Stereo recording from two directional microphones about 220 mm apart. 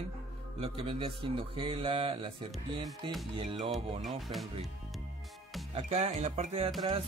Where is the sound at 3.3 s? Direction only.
25° right (ahead or behind).